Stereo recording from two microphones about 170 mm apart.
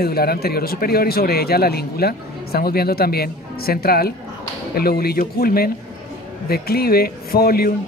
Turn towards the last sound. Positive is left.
turn(degrees=65)  # may be behind; listen again after turning